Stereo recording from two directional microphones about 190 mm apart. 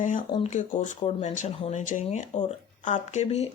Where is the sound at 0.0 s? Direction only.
45° left (ahead or behind).